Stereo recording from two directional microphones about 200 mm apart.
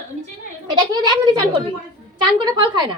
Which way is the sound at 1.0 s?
20° right (ahead or behind).